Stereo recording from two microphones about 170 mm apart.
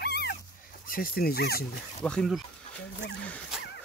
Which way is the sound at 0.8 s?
60° left (ahead or behind).